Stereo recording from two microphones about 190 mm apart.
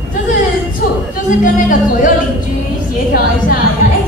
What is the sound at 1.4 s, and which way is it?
Music, 45° left (ahead or behind).